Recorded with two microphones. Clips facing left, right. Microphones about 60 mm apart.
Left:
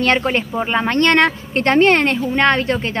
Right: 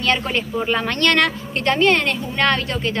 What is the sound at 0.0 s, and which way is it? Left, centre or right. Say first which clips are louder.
Speech: left 4 dB; left.